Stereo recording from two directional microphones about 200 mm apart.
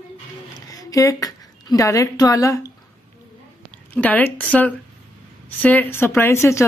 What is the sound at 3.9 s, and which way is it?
Speech, 10° left (ahead or behind).